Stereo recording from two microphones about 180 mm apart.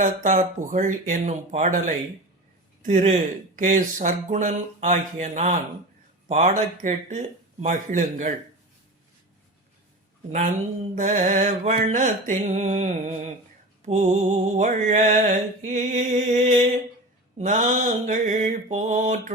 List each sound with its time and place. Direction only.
0.0 s speech: 45° right (ahead or behind)
10.9 s speech: 45° right (ahead or behind)
17.3 s mantra: 40° right (ahead or behind)
18.0 s speech: 40° right (ahead or behind)